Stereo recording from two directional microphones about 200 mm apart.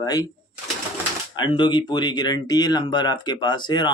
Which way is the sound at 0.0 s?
20° left (ahead or behind).